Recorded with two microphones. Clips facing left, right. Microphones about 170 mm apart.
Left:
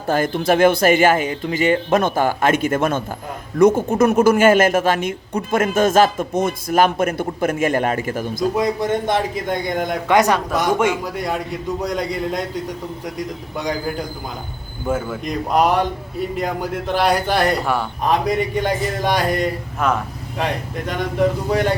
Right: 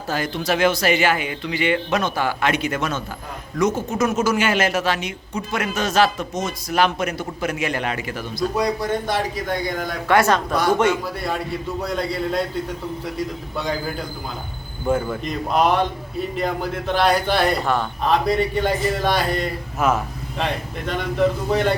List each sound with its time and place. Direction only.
0.1 s a man's voice: 50° left (ahead or behind)
8.5 s a man's voice: 20° left (ahead or behind)
14.8 s a man's voice: 5° left (ahead or behind)
19.8 s speech: 5° right (ahead or behind)
20.4 s a man's voice: 10° left (ahead or behind)